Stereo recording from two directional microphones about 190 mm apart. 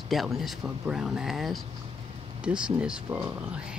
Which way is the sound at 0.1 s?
Centre (ahead or behind).